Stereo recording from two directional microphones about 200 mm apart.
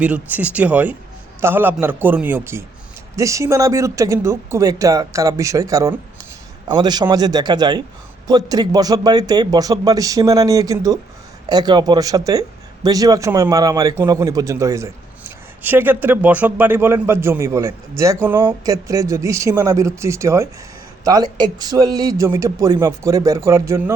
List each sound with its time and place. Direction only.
0.0 s speech: 10° right (ahead or behind)